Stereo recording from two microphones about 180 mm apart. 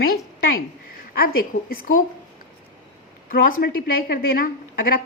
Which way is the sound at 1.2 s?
55° left (ahead or behind).